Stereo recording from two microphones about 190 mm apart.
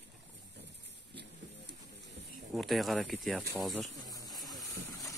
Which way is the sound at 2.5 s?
Centre (ahead or behind).